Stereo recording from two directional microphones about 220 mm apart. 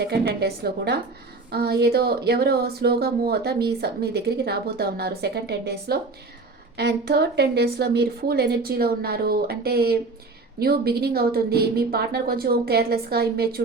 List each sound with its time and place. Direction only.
0.0 s speech: 45° right (ahead or behind)